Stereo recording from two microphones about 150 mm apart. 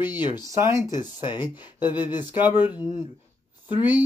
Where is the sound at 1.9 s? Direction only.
30° left (ahead or behind).